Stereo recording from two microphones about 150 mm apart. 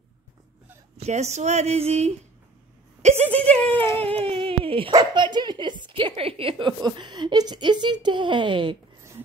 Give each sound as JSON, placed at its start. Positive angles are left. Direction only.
{"t": 0.9, "sound": "a woman's voice", "side_deg": -45}
{"t": 3.0, "sound": "a sound", "side_deg": -45}
{"t": 3.5, "sound": "speech", "side_deg": 10}
{"t": 4.0, "sound": "speech", "side_deg": -40}